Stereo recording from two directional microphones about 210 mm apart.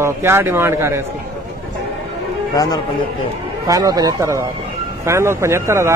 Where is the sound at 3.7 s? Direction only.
15° right (ahead or behind).